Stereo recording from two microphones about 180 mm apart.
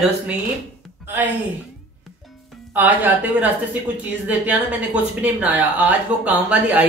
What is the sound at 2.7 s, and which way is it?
Speech, 10° right (ahead or behind).